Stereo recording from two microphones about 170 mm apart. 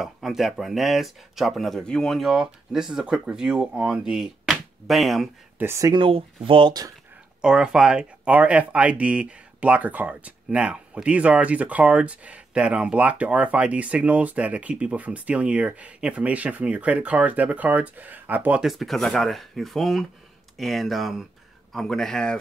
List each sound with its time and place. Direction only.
0.0 s speech: centre (ahead or behind)
5.6 s speech: 15° right (ahead or behind)
7.4 s speech: 5° right (ahead or behind)